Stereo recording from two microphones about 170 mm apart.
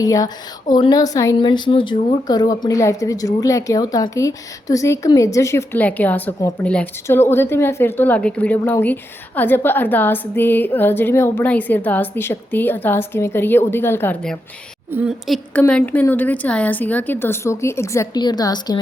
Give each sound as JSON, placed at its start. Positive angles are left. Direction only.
{"t": 0.0, "sound": "a woman's voice", "side_deg": 20}
{"t": 14.9, "sound": "a woman's voice", "side_deg": -5}
{"t": 15.5, "sound": "a woman's voice", "side_deg": 10}